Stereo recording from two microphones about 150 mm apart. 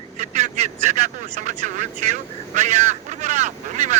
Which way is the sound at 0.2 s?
50° right (ahead or behind).